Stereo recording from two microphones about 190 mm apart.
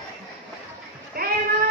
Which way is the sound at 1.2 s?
50° right (ahead or behind).